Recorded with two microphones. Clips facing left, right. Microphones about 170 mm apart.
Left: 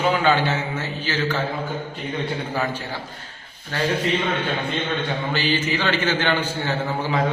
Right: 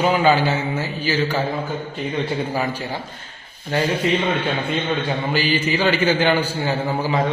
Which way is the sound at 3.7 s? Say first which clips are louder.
Right 4 dB; 20° right (ahead or behind).